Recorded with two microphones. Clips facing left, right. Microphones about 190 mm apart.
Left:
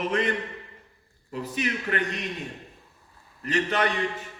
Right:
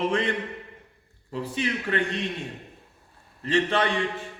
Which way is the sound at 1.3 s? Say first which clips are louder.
Right 1 dB; 30° right (ahead or behind).